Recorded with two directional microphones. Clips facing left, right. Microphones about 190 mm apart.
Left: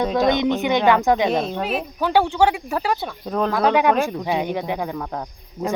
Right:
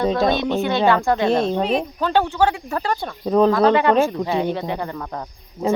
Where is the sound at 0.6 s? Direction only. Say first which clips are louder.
Right 1 dB; 15° left (ahead or behind).